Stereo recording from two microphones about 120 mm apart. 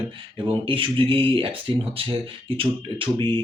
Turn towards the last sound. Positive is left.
turn(degrees=-45)  # may be behind; listen again after turning